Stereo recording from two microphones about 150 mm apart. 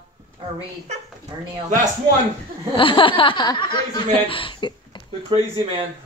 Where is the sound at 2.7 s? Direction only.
35° left (ahead or behind).